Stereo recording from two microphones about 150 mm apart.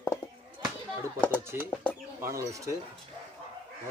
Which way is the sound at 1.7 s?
10° left (ahead or behind).